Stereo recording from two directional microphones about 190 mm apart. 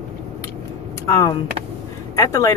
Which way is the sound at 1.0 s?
15° left (ahead or behind).